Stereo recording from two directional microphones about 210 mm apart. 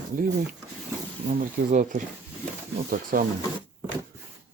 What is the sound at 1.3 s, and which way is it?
Speech, 40° right (ahead or behind).